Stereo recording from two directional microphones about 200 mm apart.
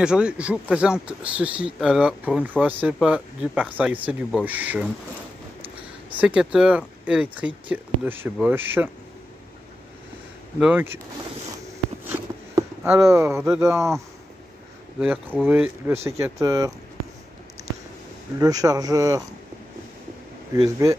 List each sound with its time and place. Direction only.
0.0 s speech: 5° right (ahead or behind)
6.1 s speech: 5° right (ahead or behind)
10.6 s speech: 5° right (ahead or behind)
12.1 s a sound: 15° right (ahead or behind)
13.5 s speech: 15° right (ahead or behind)
18.4 s speech: 20° right (ahead or behind)
20.5 s speech: 20° right (ahead or behind)